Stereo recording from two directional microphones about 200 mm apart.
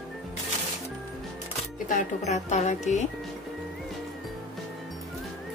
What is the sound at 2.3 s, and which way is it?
Speech, 35° left (ahead or behind).